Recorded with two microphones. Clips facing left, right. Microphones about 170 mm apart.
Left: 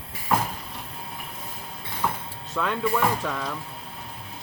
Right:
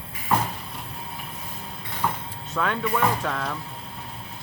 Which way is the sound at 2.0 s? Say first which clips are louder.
Right 1 dB; 5° left (ahead or behind).